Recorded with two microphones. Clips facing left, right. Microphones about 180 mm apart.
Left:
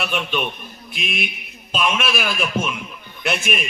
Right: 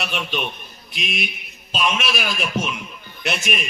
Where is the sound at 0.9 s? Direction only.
Centre (ahead or behind).